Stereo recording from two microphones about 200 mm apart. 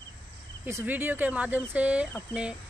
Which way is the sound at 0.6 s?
10° right (ahead or behind).